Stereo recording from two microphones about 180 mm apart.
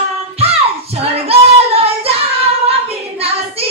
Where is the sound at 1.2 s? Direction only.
35° right (ahead or behind).